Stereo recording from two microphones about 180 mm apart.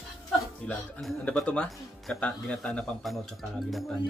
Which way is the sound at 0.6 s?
5° left (ahead or behind).